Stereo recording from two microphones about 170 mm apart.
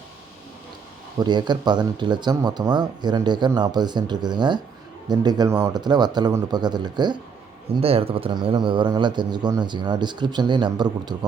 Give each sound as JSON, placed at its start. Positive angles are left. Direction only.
{"t": 1.2, "sound": "speech", "side_deg": -25}